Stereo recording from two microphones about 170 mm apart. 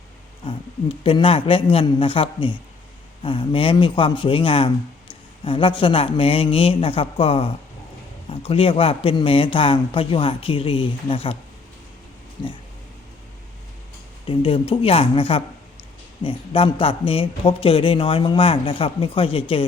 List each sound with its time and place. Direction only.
0.4 s speech: 30° left (ahead or behind)
14.3 s speech: 30° left (ahead or behind)